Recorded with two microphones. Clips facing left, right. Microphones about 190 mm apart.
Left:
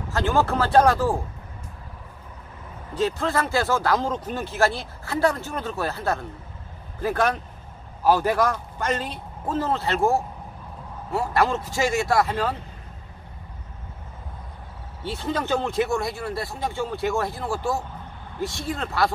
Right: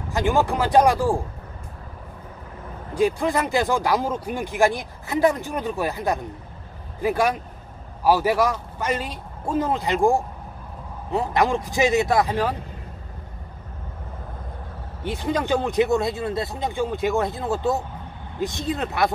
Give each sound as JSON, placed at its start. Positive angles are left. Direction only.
{"t": 0.1, "sound": "speech", "side_deg": -15}
{"t": 2.9, "sound": "speech", "side_deg": -10}
{"t": 15.0, "sound": "speech", "side_deg": -15}